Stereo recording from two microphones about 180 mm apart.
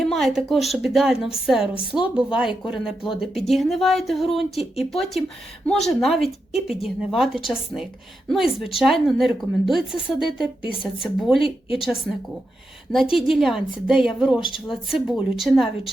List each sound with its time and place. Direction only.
0.0 s speech: centre (ahead or behind)
10.4 s speech: 30° left (ahead or behind)
11.0 s speech: centre (ahead or behind)